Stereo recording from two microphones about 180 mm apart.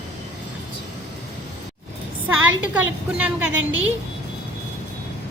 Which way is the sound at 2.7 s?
10° right (ahead or behind).